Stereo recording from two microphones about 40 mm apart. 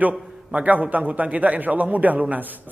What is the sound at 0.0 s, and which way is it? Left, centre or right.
A man's voice, right.